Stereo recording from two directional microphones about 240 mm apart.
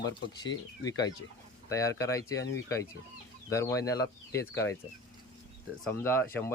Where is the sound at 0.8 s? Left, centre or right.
Centre.